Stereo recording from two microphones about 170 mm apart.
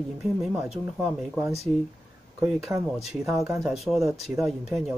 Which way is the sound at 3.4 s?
20° right (ahead or behind).